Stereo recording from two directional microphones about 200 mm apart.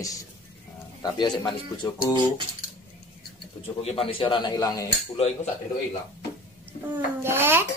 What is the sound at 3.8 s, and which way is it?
Speech, 30° left (ahead or behind).